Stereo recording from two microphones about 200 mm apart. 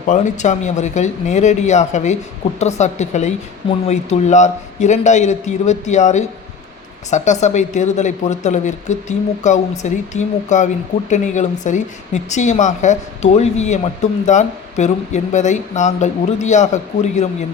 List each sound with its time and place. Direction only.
0.1 s speech: 35° left (ahead or behind)